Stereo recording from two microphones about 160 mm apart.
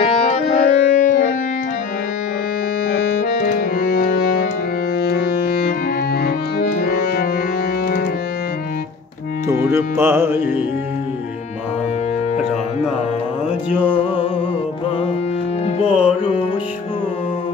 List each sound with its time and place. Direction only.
0.0 s music: 40° left (ahead or behind)
3.2 s music: 60° left (ahead or behind)
6.8 s music: 70° left (ahead or behind)
9.5 s music: 15° right (ahead or behind)
13.7 s music: 10° right (ahead or behind)
15.9 s music: 5° right (ahead or behind)